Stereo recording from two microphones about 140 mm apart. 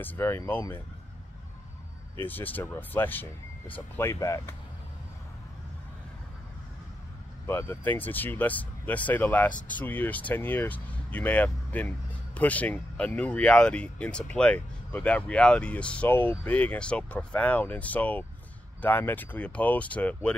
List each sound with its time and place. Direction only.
0.0 s speech: 15° left (ahead or behind)
2.2 s speech: 10° left (ahead or behind)
7.4 s speech: 20° left (ahead or behind)